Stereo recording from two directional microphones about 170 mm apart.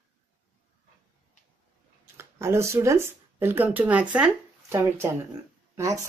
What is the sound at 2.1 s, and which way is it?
Speech, 15° right (ahead or behind).